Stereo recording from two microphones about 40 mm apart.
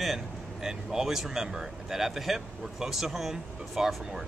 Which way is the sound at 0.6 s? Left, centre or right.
Centre.